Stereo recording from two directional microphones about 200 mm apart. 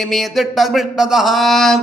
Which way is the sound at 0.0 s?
Centre (ahead or behind).